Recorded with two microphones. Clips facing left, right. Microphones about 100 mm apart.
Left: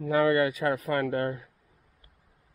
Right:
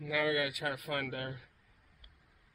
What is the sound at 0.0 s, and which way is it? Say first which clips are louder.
Speech: left 9 dB; 40° left (ahead or behind).